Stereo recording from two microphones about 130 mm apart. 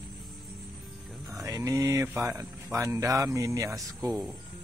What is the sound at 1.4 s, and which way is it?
Speech, 25° right (ahead or behind).